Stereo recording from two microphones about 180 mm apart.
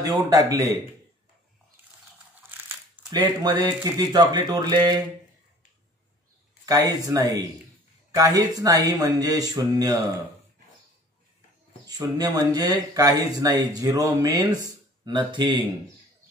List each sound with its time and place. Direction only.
0.0 s speech: 20° right (ahead or behind)
3.1 s speech: 20° right (ahead or behind)
6.6 s speech: 20° right (ahead or behind)
11.8 s speech: 20° right (ahead or behind)